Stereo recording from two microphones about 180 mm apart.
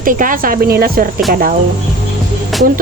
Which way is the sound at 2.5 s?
Centre (ahead or behind).